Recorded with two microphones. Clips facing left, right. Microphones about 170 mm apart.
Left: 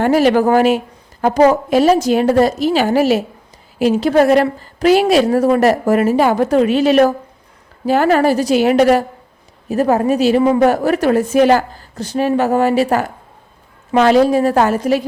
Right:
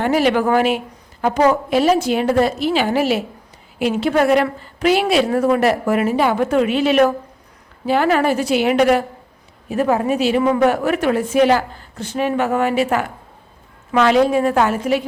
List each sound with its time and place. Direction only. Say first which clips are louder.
0.0 s a woman's voice: left 4 dB; 40° left (ahead or behind)